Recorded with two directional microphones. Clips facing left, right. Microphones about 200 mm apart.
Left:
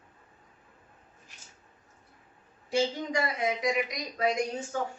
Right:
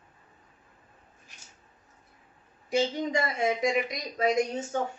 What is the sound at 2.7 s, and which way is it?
Speech, 20° right (ahead or behind).